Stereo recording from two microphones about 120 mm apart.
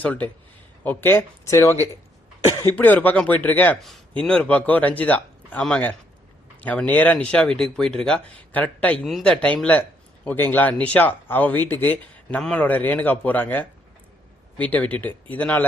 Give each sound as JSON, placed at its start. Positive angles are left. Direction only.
{"t": 0.0, "sound": "speech", "side_deg": 15}
{"t": 9.0, "sound": "speech", "side_deg": 0}